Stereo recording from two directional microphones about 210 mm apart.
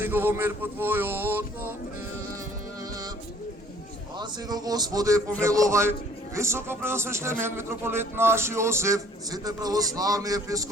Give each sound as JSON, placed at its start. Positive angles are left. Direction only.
{"t": 0.0, "sound": "a man's voice", "side_deg": -10}
{"t": 4.2, "sound": "a man's voice", "side_deg": -20}